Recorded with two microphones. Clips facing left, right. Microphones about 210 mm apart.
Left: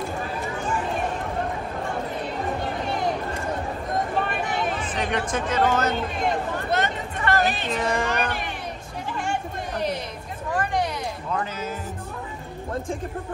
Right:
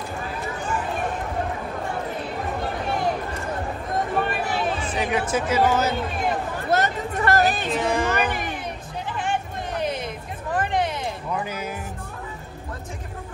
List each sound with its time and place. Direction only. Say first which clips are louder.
4.9 s speech: right 3 dB; 5° right (ahead or behind)
6.7 s speech: right 5 dB; 40° right (ahead or behind)
7.7 s speech: right 2 dB; centre (ahead or behind)
10.5 s a sound: right 1 dB; 25° right (ahead or behind)